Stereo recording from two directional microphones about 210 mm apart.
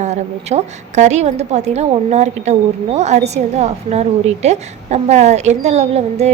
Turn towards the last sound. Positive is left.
turn(degrees=-30)  # may be behind; listen again after turning